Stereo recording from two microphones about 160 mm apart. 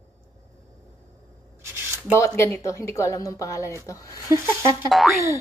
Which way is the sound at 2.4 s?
20° left (ahead or behind).